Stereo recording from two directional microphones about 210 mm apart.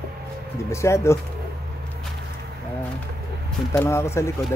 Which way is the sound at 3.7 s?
10° left (ahead or behind).